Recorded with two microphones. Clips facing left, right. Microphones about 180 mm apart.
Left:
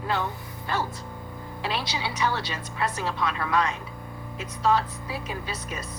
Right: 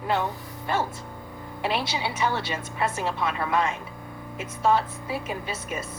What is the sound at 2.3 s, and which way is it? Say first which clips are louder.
A woman's voice: right 2 dB; 25° right (ahead or behind).